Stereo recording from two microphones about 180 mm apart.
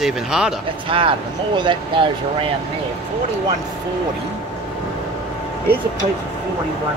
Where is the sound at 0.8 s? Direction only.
30° right (ahead or behind).